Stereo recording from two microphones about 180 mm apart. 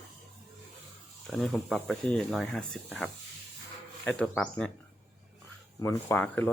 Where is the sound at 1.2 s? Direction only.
5° left (ahead or behind).